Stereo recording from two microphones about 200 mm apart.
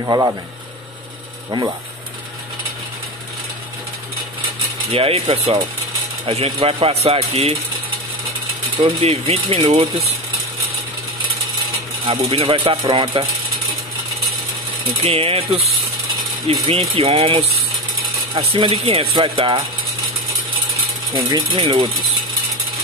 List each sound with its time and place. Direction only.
0.0 s speech: 20° right (ahead or behind)
4.9 s speech: 30° right (ahead or behind)
8.8 s speech: 30° right (ahead or behind)
12.1 s speech: 25° right (ahead or behind)
15.0 s speech: 30° right (ahead or behind)
16.6 s speech: 30° right (ahead or behind)
21.1 s speech: 25° right (ahead or behind)